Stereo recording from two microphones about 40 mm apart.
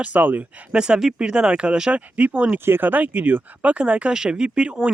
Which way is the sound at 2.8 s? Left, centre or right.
Right.